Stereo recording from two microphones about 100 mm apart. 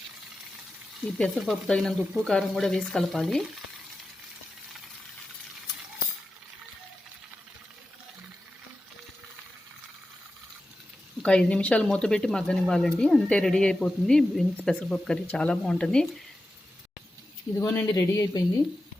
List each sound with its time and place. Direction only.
1.0 s speech: centre (ahead or behind)
11.2 s speech: 10° left (ahead or behind)
17.6 s a woman's voice: 25° left (ahead or behind)